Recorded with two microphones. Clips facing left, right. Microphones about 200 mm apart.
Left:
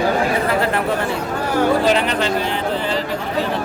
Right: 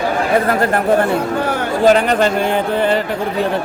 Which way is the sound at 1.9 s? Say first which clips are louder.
Right 6 dB; 45° right (ahead or behind).